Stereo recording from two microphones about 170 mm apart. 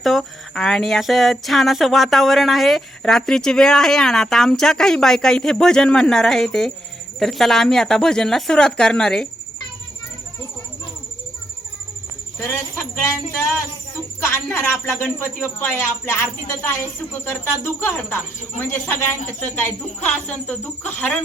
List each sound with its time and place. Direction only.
0.0 s speech: centre (ahead or behind)
12.4 s speech: 15° left (ahead or behind)
13.9 s speech: 15° left (ahead or behind)